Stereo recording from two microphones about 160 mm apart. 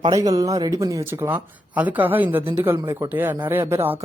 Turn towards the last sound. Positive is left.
turn(degrees=-15)  # may be behind; listen again after turning